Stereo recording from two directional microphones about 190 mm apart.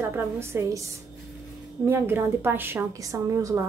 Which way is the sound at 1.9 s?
10° right (ahead or behind).